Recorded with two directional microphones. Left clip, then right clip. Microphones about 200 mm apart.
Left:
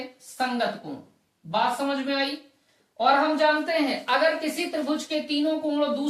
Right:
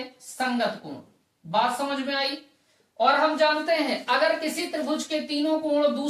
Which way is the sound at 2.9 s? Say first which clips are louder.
Even; 15° left (ahead or behind).